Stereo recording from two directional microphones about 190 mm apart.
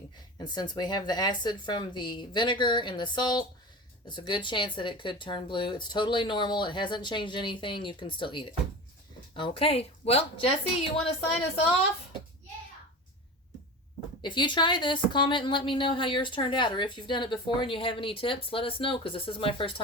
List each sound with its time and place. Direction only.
0.3 s a woman's voice: 25° left (ahead or behind)
14.2 s a woman's voice: 25° left (ahead or behind)